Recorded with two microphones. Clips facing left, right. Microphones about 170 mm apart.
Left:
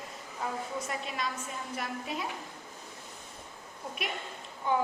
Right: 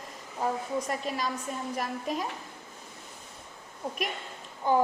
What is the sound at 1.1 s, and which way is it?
A woman's voice, 40° right (ahead or behind).